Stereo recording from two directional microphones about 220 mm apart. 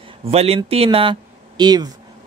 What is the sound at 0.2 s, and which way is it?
Speech, 25° right (ahead or behind).